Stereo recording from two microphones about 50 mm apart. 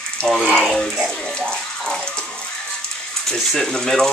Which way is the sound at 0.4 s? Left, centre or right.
Centre.